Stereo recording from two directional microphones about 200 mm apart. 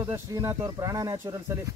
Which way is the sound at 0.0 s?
15° right (ahead or behind).